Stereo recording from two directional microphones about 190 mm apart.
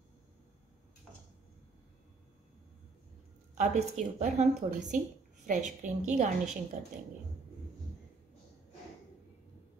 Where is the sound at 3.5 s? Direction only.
40° right (ahead or behind).